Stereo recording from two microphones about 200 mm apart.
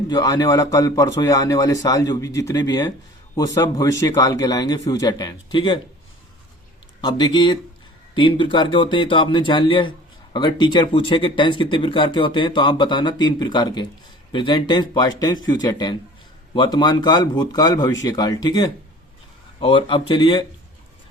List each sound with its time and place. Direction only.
0.1 s speech: 20° left (ahead or behind)
7.0 s speech: 20° left (ahead or behind)